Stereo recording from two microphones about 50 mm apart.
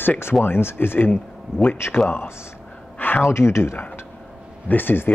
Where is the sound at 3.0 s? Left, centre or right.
Left.